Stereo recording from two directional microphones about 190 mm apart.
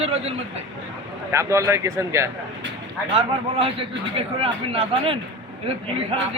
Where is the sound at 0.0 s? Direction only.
30° right (ahead or behind).